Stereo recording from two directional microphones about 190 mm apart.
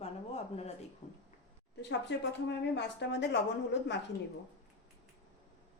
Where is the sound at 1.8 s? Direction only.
65° left (ahead or behind).